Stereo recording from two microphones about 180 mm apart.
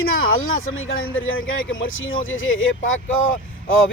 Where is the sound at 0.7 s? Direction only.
90° left.